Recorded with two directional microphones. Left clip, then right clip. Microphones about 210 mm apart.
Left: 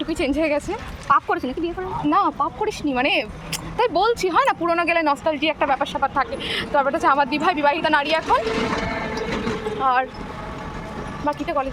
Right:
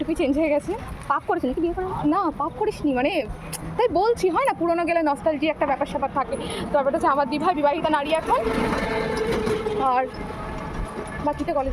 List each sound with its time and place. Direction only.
0.0 s a woman's voice: centre (ahead or behind)
1.1 s a woman's voice: 15° right (ahead or behind)
2.0 s a woman's voice: centre (ahead or behind)
6.7 s speech: 15° left (ahead or behind)
8.4 s a sound: 45° right (ahead or behind)
9.8 s a woman's voice: centre (ahead or behind)
11.3 s speech: 5° left (ahead or behind)